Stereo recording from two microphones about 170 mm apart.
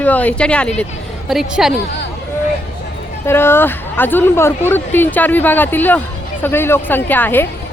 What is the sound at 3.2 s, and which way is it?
Speech, 15° left (ahead or behind).